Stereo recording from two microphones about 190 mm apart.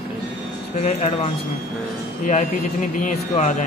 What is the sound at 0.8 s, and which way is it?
Speech, 35° left (ahead or behind).